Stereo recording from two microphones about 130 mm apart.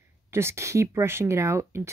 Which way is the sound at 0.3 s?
20° right (ahead or behind).